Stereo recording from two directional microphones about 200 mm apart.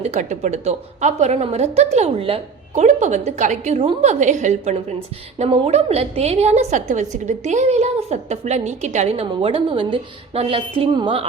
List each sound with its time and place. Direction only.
0.0 s a woman's voice: 35° right (ahead or behind)